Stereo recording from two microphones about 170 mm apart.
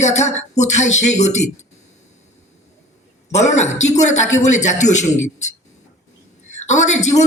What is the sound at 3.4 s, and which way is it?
Speech, 45° left (ahead or behind).